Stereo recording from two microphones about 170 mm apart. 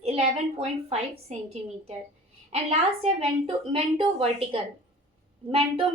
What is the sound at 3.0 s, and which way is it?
A woman's voice, 35° right (ahead or behind).